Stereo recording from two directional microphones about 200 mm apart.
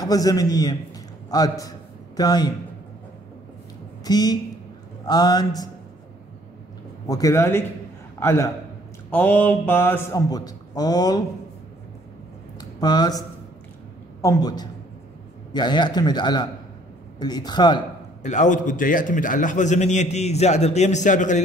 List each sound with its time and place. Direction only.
0.0 s a man's voice: 20° left (ahead or behind)
4.0 s a man's voice: 20° left (ahead or behind)
7.1 s a man's voice: 15° left (ahead or behind)
12.5 s a sound: 20° left (ahead or behind)
14.2 s a man's voice: 20° left (ahead or behind)
18.2 s a man's voice: 40° left (ahead or behind)